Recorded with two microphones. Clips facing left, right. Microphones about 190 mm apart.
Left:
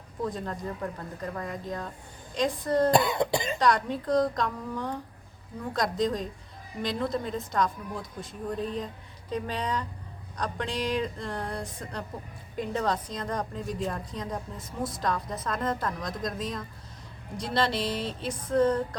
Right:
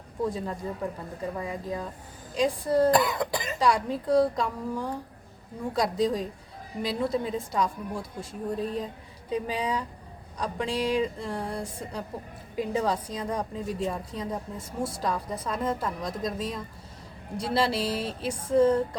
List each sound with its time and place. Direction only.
0.2 s a woman's voice: 5° right (ahead or behind)
3.1 s speech: 25° left (ahead or behind)
3.6 s a woman's voice: 5° right (ahead or behind)